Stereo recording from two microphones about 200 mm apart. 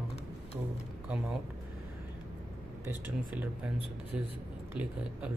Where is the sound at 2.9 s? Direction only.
10° right (ahead or behind).